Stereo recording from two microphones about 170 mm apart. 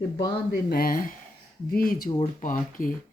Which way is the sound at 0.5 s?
65° left (ahead or behind).